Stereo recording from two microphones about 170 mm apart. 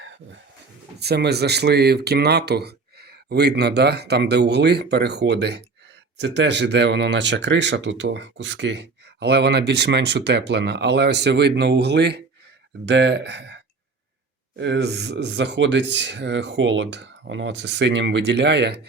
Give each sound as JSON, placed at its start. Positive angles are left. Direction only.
{"t": 0.9, "sound": "speech", "side_deg": -75}
{"t": 14.6, "sound": "speech", "side_deg": -85}